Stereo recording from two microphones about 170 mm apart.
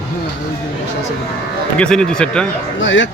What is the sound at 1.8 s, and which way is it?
Speech, 5° left (ahead or behind).